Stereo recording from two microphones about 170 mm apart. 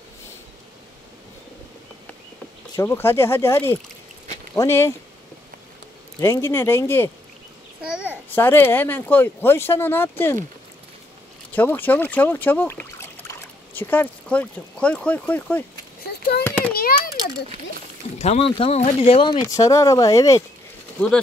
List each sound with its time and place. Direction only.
2.7 s speech: 15° left (ahead or behind)
6.2 s speech: 15° left (ahead or behind)
7.9 s a child's voice: 5° right (ahead or behind)
8.4 s speech: 15° left (ahead or behind)
11.5 s speech: 10° left (ahead or behind)
16.0 s a sound: 70° left (ahead or behind)
16.4 s a sound: 10° left (ahead or behind)
16.7 s a child's voice: 60° left (ahead or behind)
18.2 s speech: 35° left (ahead or behind); by 20.4 s 20° left (ahead or behind)